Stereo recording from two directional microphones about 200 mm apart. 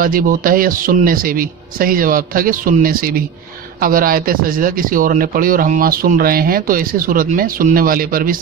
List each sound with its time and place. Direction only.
0.0 s speech: 45° right (ahead or behind)